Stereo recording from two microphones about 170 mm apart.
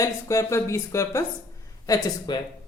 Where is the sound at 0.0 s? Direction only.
20° left (ahead or behind).